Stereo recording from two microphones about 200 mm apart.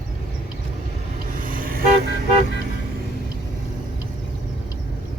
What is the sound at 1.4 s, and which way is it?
Toot, 45° right (ahead or behind).